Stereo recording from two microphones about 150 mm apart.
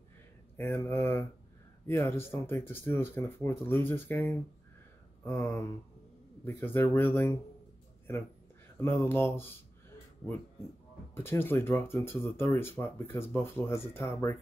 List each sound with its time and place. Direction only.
0.6 s speech: 15° left (ahead or behind)
8.8 s speech: 15° left (ahead or behind)
11.1 s speech: 15° left (ahead or behind)